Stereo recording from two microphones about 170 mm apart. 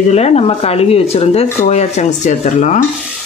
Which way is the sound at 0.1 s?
40° left (ahead or behind).